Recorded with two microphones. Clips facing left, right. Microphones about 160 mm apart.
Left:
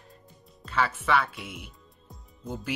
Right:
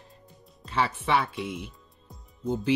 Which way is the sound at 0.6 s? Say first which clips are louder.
Even; 30° right (ahead or behind).